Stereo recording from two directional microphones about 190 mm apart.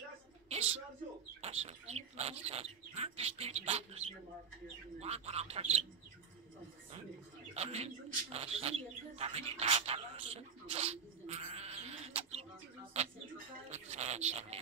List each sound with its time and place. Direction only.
0.5 s a sound: 35° right (ahead or behind)
1.4 s speech: 35° right (ahead or behind)
5.0 s speech: 35° right (ahead or behind)
7.5 s speech: 35° right (ahead or behind)
12.9 s a sound: 35° right (ahead or behind)
13.7 s speech: 35° right (ahead or behind)